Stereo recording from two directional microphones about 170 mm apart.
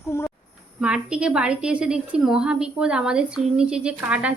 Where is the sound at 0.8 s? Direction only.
5° right (ahead or behind).